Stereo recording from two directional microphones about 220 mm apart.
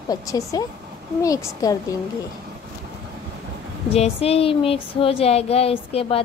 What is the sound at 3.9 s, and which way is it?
Speech, 25° left (ahead or behind).